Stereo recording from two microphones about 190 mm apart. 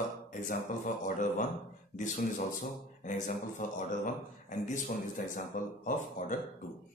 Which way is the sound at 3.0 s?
40° left (ahead or behind).